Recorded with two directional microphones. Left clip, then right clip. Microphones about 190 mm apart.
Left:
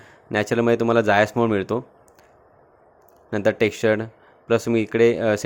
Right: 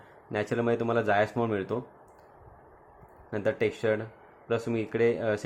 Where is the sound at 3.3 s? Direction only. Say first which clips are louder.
Left 8 dB; 45° left (ahead or behind).